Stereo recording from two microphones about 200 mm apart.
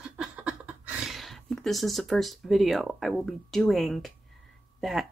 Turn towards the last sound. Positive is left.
turn(degrees=0)  # may be behind; listen again after turning